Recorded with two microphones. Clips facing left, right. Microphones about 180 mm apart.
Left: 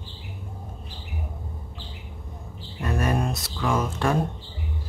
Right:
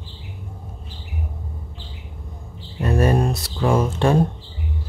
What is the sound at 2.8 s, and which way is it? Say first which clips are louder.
Speech: right 6 dB; 30° right (ahead or behind).